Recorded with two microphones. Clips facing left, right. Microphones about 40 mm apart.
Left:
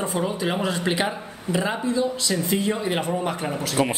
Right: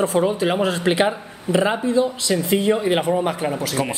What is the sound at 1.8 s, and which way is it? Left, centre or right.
Speech, right.